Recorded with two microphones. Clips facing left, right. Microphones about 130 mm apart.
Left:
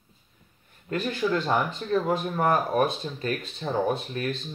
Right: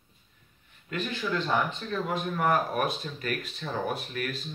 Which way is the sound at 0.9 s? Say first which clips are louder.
Left 5 dB; 35° left (ahead or behind).